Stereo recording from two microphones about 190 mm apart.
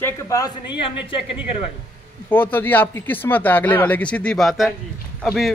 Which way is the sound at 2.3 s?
10° left (ahead or behind).